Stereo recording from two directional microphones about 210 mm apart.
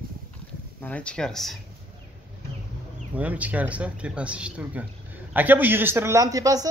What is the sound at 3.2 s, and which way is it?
Speech, 5° right (ahead or behind).